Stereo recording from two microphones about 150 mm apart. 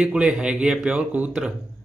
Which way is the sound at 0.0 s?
5° right (ahead or behind).